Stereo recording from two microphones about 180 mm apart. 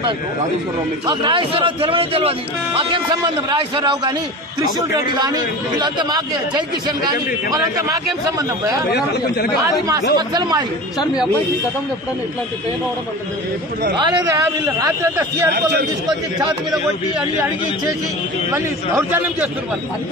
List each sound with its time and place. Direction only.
1.0 s a man's voice: 25° right (ahead or behind)
5.1 s a man's voice: 25° right (ahead or behind)
8.9 s speech: 65° left (ahead or behind)
10.1 s a man's voice: 25° right (ahead or behind)
13.9 s a man's voice: 20° right (ahead or behind)
15.5 s speech: 65° right (ahead or behind)
18.5 s a man's voice: 10° right (ahead or behind)